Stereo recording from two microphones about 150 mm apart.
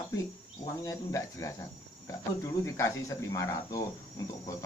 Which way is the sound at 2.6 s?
20° left (ahead or behind).